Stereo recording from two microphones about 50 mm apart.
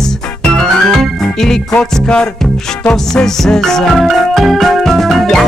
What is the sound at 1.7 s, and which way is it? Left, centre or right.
Music, left.